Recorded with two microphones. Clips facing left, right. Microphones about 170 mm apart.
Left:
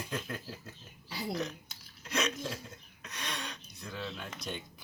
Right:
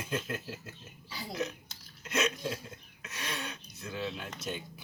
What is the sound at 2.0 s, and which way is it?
Speech, centre (ahead or behind).